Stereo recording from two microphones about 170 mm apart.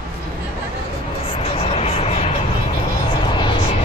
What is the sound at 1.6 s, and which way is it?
Vehicle, 35° left (ahead or behind).